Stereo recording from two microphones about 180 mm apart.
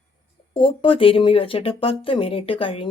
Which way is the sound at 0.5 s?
30° left (ahead or behind).